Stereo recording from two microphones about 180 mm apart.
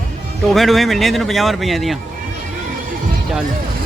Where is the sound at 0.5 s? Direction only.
Centre (ahead or behind).